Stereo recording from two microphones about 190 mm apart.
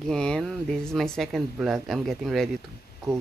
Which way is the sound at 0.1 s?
5° left (ahead or behind).